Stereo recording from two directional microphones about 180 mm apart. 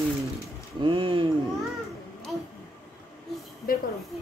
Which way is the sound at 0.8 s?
30° right (ahead or behind).